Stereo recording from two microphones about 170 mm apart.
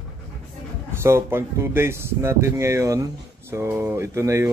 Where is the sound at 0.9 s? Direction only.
15° right (ahead or behind).